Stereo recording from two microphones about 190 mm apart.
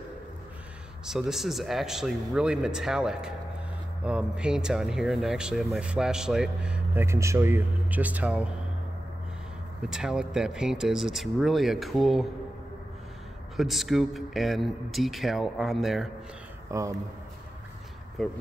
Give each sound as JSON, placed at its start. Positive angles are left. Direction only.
{"t": 1.0, "sound": "speech", "side_deg": 0}
{"t": 9.8, "sound": "speech", "side_deg": -5}
{"t": 13.6, "sound": "speech", "side_deg": 0}
{"t": 16.7, "sound": "speech", "side_deg": -15}
{"t": 18.2, "sound": "speech", "side_deg": 0}